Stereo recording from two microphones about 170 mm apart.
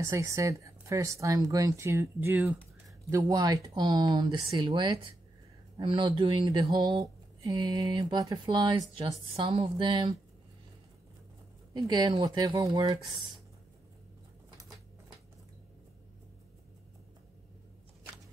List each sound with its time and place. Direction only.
0.0 s speech: 15° right (ahead or behind)
11.7 s speech: 25° right (ahead or behind)